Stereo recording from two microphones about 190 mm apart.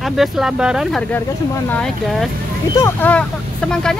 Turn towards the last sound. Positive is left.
turn(degrees=5)  # may be behind; listen again after turning